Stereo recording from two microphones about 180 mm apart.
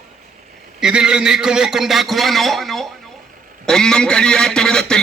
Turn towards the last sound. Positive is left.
turn(degrees=5)  # may be behind; listen again after turning